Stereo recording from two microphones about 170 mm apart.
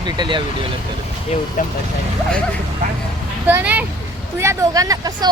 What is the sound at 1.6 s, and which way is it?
Speech, 50° left (ahead or behind).